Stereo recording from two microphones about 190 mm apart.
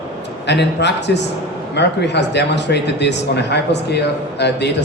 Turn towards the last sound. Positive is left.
turn(degrees=65)  # may be behind; listen again after turning